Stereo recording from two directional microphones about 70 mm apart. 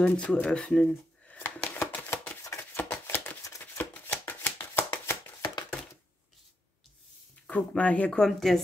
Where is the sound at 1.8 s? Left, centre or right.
Left.